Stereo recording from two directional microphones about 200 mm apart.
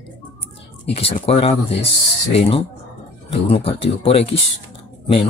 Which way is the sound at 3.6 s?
30° left (ahead or behind).